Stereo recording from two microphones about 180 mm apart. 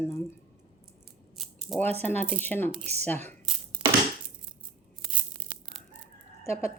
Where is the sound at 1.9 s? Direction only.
10° left (ahead or behind).